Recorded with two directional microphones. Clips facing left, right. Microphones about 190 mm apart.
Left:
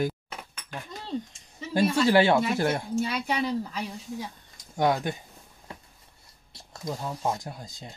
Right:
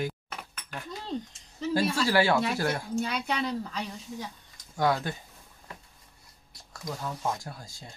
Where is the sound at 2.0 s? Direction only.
20° left (ahead or behind).